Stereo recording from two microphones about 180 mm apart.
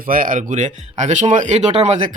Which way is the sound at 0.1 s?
50° right (ahead or behind).